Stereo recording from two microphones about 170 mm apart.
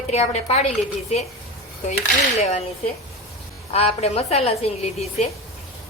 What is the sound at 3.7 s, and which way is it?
A woman's voice, 40° left (ahead or behind).